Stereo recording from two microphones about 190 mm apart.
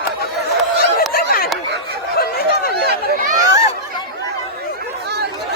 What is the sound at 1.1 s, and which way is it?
Snicker, 50° left (ahead or behind).